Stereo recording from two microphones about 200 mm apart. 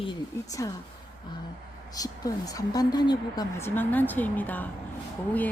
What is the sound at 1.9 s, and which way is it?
Speech, 20° left (ahead or behind).